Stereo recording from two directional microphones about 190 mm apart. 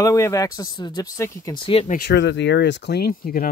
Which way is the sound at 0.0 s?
15° left (ahead or behind).